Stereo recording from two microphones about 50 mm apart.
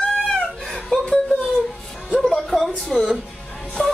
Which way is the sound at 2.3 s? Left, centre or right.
Centre.